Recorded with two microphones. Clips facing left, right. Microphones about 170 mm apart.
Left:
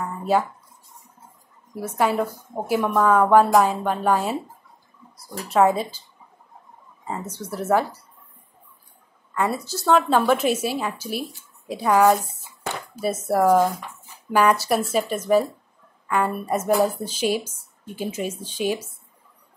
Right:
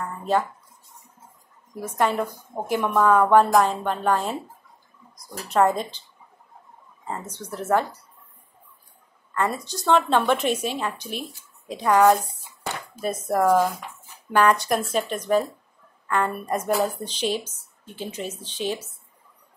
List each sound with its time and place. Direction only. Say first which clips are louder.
0.0 s a sound: left 2 dB; 10° left (ahead or behind)
2.0 s a woman's voice: left 1 dB; 5° left (ahead or behind)
7.3 s a woman's voice: left 2 dB; 10° left (ahead or behind)
9.3 s a woman's voice: left 1 dB; 10° left (ahead or behind)
13.3 s a woman's voice: left 2 dB; 5° left (ahead or behind)